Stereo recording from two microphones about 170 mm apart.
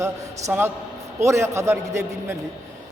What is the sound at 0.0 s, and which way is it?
A woman's voice, 15° right (ahead or behind).